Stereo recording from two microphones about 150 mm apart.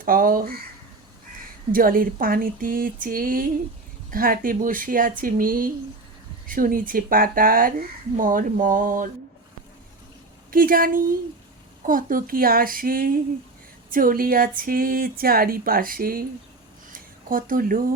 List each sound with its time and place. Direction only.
0.0 s speech: 70° right (ahead or behind)
1.7 s speech: 70° right (ahead or behind)
10.5 s speech: 70° right (ahead or behind)
16.9 s a sound: 70° right (ahead or behind)